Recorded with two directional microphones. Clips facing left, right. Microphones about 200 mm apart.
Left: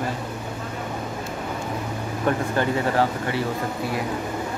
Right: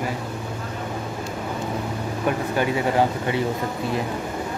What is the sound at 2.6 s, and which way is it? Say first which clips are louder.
Speech: right 3 dB; 15° right (ahead or behind).